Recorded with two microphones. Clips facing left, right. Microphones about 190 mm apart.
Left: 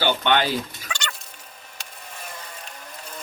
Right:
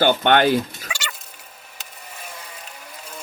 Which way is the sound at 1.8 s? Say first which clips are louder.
Even; 5° right (ahead or behind).